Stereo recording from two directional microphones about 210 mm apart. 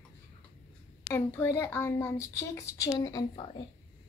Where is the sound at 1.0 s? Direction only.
10° left (ahead or behind).